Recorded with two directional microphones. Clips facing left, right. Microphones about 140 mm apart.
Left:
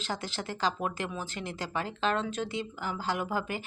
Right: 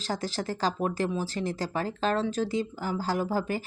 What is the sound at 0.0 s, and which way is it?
Speech, 40° right (ahead or behind).